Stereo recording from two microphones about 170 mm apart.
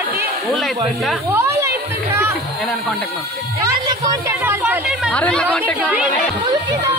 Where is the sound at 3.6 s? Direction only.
20° right (ahead or behind).